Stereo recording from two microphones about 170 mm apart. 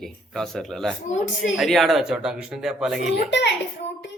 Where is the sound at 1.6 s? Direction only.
Centre (ahead or behind).